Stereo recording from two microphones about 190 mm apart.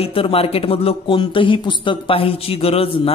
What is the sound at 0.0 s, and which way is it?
Speech, 30° left (ahead or behind).